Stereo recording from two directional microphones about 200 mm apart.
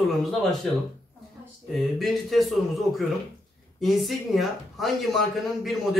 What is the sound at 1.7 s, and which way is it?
Speech, centre (ahead or behind).